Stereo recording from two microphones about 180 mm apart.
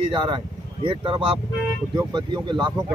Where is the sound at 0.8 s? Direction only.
25° right (ahead or behind).